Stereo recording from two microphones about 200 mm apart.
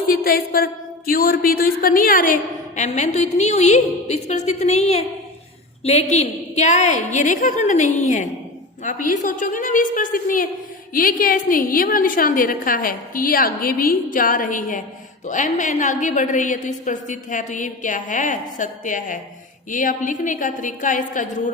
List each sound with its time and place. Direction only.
0.1 s a woman's voice: 45° left (ahead or behind)